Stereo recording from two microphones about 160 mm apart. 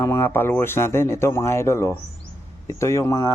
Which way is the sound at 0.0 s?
15° left (ahead or behind).